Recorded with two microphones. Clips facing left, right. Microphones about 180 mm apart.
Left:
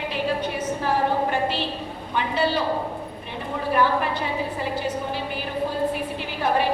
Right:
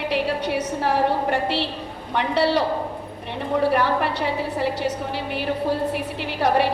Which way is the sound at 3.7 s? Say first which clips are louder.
Even; 70° right (ahead or behind).